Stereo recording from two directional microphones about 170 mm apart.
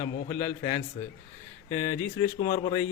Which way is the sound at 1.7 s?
15° left (ahead or behind).